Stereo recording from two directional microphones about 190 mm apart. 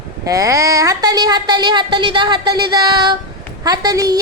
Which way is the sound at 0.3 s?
15° right (ahead or behind).